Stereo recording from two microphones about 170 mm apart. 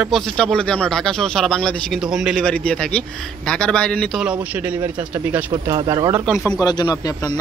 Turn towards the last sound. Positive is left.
turn(degrees=20)  # may be behind; listen again after turning